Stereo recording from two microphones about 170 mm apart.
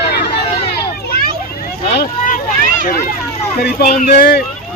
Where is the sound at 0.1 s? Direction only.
70° left (ahead or behind).